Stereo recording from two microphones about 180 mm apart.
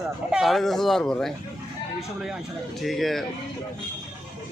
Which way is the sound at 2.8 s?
Centre (ahead or behind).